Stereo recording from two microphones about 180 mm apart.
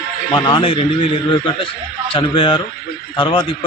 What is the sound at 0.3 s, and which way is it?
A man's voice, 25° left (ahead or behind).